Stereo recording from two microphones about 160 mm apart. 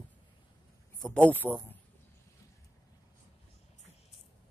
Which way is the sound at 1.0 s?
5° left (ahead or behind).